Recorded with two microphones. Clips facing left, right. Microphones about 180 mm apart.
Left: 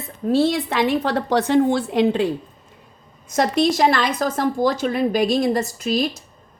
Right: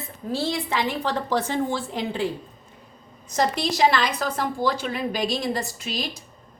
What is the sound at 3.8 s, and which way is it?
A woman's voice, 50° left (ahead or behind).